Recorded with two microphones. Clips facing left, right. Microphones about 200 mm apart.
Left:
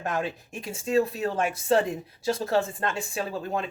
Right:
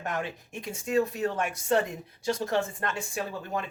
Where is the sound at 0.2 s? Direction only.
30° left (ahead or behind).